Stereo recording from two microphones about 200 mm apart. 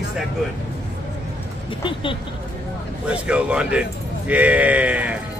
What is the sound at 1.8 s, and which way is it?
Speech, 25° left (ahead or behind).